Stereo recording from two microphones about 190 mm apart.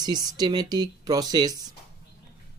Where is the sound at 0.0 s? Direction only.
20° right (ahead or behind).